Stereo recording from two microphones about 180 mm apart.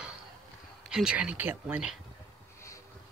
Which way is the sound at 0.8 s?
5° right (ahead or behind).